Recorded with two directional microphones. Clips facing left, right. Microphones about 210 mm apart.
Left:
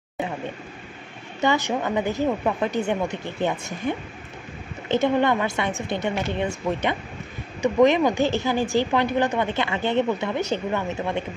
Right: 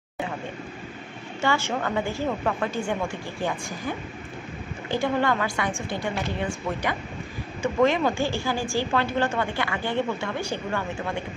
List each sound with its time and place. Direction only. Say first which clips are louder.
1.4 s a woman's voice: left 3 dB; 20° left (ahead or behind)